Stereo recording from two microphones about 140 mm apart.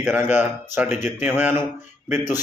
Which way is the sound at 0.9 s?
55° left (ahead or behind).